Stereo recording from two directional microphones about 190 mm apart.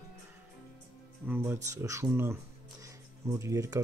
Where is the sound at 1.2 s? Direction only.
10° right (ahead or behind).